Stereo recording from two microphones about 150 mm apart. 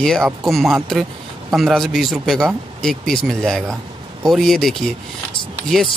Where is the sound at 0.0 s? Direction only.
Centre (ahead or behind).